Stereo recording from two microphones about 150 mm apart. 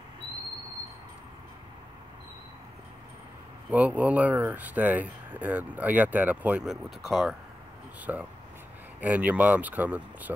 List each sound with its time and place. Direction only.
3.7 s speech: 10° right (ahead or behind)
8.0 s speech: 10° right (ahead or behind)